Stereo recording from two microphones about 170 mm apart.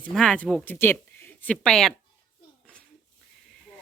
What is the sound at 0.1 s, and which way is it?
Speech, 5° left (ahead or behind).